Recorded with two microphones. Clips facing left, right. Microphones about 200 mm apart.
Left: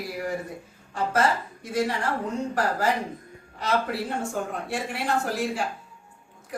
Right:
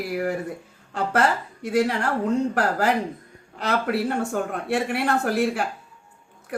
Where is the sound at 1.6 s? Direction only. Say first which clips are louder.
Right 5 dB; 65° right (ahead or behind).